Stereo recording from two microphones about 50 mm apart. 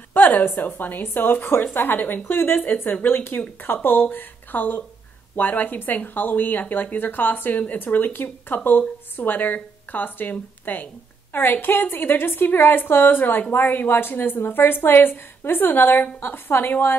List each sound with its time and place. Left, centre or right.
0.1 s a woman's voice: left